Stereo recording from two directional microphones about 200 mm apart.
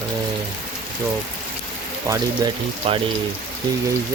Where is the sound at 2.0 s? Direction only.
15° right (ahead or behind).